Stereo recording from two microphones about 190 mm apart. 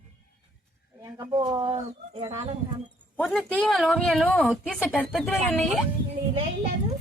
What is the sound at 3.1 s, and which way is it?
Speech, centre (ahead or behind).